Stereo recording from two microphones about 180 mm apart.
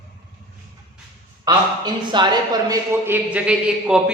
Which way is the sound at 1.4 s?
25° right (ahead or behind).